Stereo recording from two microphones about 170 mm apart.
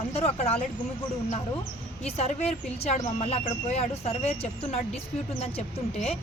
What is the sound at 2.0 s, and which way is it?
Speech, 40° left (ahead or behind).